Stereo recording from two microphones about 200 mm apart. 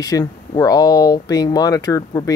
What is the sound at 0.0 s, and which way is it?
Speech, 20° left (ahead or behind).